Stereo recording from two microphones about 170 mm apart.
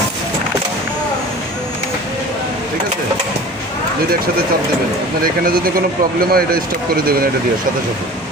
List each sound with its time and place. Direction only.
5.2 s speech: 60° right (ahead or behind)